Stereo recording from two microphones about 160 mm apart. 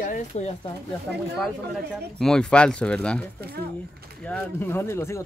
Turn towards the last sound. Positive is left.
turn(degrees=15)  # may be behind; listen again after turning